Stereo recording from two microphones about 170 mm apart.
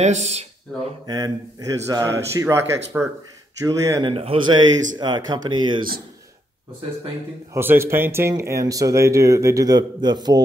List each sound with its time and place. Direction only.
0.0 s speech: 40° right (ahead or behind)
1.0 s speech: 20° right (ahead or behind)
4.1 s speech: 35° right (ahead or behind)
7.5 s speech: 15° right (ahead or behind)